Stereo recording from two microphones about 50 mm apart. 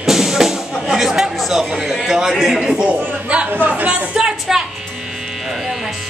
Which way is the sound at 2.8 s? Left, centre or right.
Right.